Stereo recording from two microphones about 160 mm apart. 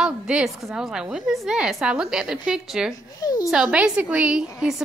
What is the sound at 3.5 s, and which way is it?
Speech, 5° right (ahead or behind).